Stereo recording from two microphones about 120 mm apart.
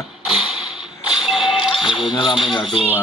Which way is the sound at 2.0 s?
40° left (ahead or behind).